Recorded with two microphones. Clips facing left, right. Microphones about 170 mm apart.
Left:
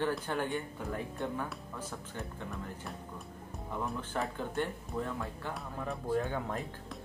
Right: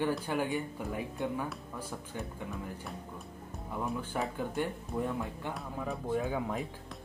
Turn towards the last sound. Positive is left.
turn(degrees=-5)  # may be behind; listen again after turning